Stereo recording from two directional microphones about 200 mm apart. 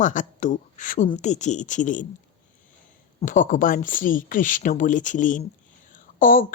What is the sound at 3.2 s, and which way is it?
A woman's voice, 40° left (ahead or behind).